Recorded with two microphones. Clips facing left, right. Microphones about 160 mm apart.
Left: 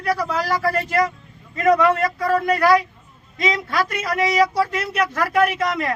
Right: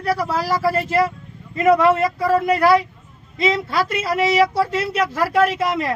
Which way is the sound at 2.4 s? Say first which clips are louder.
Even; 25° right (ahead or behind).